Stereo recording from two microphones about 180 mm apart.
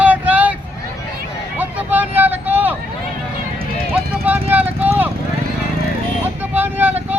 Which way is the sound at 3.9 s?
10° right (ahead or behind).